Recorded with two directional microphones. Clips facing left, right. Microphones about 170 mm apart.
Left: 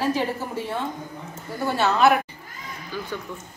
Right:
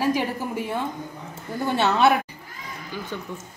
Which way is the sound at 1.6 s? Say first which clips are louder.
Even; 20° right (ahead or behind).